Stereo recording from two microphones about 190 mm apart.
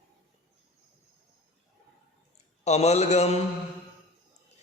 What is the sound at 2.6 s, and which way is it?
Speech, 35° left (ahead or behind).